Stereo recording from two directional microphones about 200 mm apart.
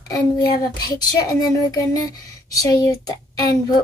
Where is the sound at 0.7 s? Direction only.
20° left (ahead or behind).